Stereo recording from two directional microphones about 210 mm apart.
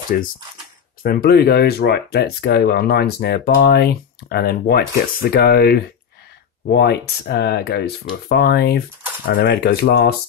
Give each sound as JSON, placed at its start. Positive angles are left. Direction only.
{"t": 0.1, "sound": "speech", "side_deg": 40}